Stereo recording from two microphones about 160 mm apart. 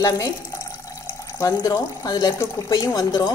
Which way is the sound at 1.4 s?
20° left (ahead or behind).